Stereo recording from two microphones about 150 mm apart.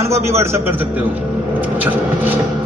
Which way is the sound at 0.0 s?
20° right (ahead or behind).